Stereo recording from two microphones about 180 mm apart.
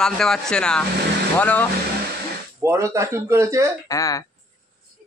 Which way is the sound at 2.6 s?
15° right (ahead or behind).